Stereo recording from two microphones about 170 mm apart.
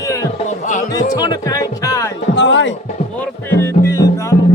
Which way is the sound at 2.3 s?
90° left.